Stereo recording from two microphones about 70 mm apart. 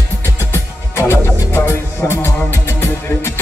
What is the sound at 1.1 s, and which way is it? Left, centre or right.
Music, left.